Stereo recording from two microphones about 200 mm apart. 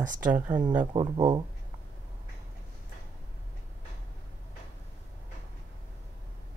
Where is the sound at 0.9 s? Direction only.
25° right (ahead or behind).